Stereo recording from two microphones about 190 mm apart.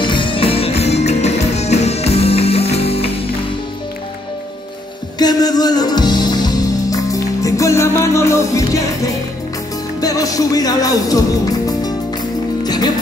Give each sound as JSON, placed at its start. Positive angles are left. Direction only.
{"t": 0.0, "sound": "music", "side_deg": 25}
{"t": 5.2, "sound": "music", "side_deg": 20}
{"t": 9.9, "sound": "speech", "side_deg": 20}
{"t": 12.6, "sound": "music", "side_deg": 20}